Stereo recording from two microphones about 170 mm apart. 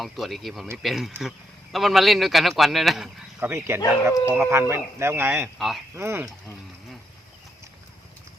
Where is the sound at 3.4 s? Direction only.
15° right (ahead or behind).